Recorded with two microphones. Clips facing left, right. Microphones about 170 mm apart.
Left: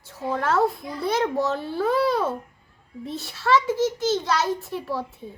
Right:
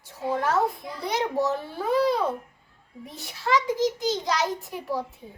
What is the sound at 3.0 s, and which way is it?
A child's voice, 15° right (ahead or behind).